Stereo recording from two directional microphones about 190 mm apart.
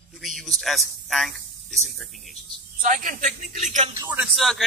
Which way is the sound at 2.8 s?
45° right (ahead or behind).